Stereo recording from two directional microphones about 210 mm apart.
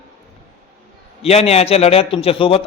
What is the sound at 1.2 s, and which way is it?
A man's voice, 30° left (ahead or behind).